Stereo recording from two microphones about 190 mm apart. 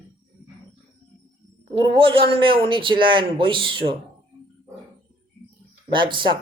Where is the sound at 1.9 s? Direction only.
25° right (ahead or behind).